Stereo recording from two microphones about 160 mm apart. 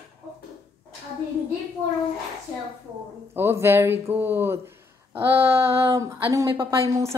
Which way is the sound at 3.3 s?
15° right (ahead or behind).